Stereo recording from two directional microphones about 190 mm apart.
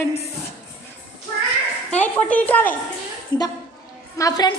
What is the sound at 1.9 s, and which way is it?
Speech, 5° left (ahead or behind).